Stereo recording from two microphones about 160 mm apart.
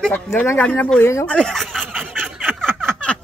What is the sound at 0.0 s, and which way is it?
A child's voice, 10° left (ahead or behind).